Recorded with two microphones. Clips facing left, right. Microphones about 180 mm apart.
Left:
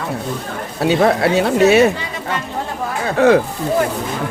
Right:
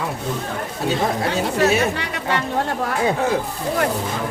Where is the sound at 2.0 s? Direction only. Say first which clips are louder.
Right 1 dB; 70° right (ahead or behind).